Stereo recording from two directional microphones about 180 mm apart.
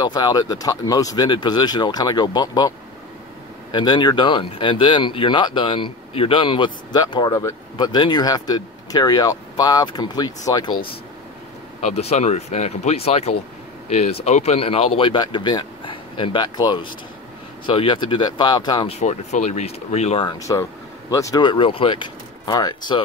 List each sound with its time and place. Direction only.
0.0 s speech: 20° left (ahead or behind)
3.7 s speech: 25° left (ahead or behind)
11.8 s speech: 35° left (ahead or behind)
18.9 s speech: 40° left (ahead or behind)
20.3 s speech: 20° left (ahead or behind)